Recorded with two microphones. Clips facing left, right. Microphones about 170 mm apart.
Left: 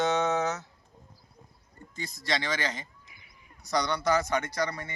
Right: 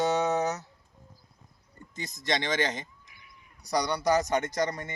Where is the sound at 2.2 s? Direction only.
20° right (ahead or behind).